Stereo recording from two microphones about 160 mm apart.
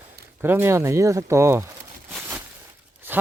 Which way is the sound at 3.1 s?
10° right (ahead or behind).